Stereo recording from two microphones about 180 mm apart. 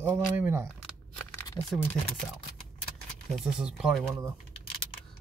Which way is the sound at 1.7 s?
5° left (ahead or behind).